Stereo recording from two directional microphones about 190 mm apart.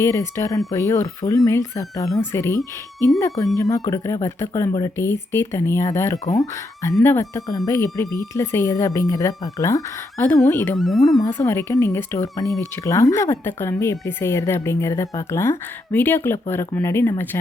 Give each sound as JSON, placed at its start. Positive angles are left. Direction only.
{"t": 0.0, "sound": "speech", "side_deg": 15}
{"t": 10.8, "sound": "speech", "side_deg": 0}
{"t": 11.2, "sound": "speech", "side_deg": 15}